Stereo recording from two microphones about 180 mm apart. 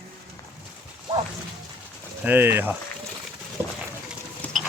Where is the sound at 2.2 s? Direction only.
10° right (ahead or behind).